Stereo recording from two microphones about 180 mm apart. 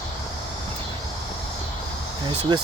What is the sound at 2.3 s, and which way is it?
Speech, 25° right (ahead or behind).